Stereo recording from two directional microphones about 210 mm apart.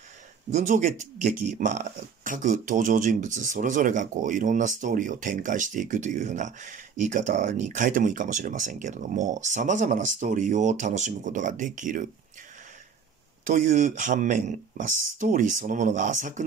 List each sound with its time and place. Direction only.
0.6 s speech: 35° right (ahead or behind)
13.5 s speech: 35° right (ahead or behind)